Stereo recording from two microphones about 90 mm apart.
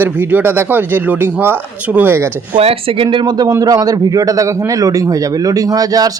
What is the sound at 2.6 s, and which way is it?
A man's voice, 90° right.